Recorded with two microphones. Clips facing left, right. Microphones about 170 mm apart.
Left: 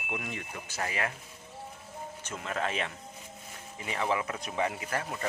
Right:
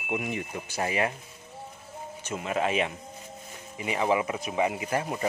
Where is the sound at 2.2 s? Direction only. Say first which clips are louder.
Right 6 dB; 15° right (ahead or behind).